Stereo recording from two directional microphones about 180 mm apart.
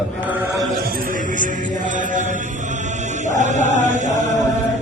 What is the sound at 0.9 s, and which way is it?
Mantra, 50° right (ahead or behind).